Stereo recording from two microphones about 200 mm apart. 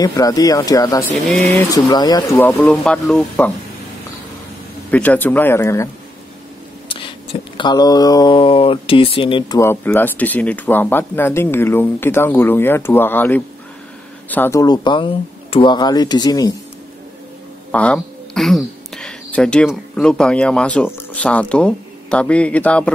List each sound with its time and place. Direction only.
0.0 s speech: 15° left (ahead or behind)
4.9 s speech: 10° left (ahead or behind)
7.5 s speech: 20° left (ahead or behind)
9.6 s speech: 10° left (ahead or behind)
17.6 s speech: 5° left (ahead or behind)